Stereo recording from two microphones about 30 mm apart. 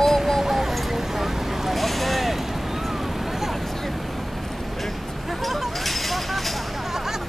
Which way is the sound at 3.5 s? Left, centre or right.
Centre.